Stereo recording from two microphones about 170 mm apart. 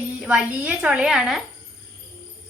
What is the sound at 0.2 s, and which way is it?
A woman's voice, 5° right (ahead or behind).